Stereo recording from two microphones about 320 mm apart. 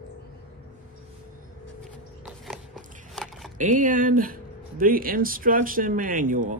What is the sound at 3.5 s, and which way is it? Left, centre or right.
Speech, right.